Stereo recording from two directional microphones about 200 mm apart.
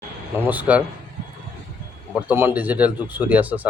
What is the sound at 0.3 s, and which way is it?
Speech, 10° right (ahead or behind).